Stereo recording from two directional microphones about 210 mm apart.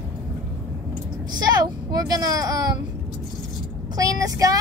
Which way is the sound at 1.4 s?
20° right (ahead or behind).